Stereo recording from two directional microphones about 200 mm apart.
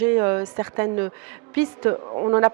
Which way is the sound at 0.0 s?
15° right (ahead or behind).